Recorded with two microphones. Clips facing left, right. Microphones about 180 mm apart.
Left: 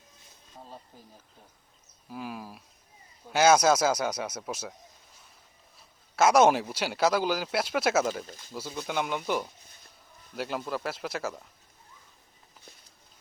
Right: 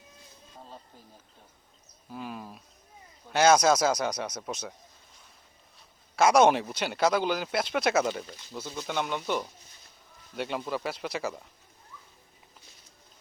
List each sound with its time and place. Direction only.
2.0 s speech: 5° left (ahead or behind)
6.1 s speech: 5° left (ahead or behind)